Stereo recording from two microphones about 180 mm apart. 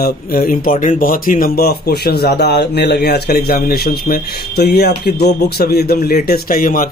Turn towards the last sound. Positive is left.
turn(degrees=50)  # may be behind; listen again after turning